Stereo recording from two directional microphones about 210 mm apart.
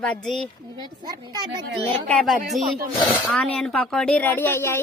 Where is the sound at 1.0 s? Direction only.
20° right (ahead or behind).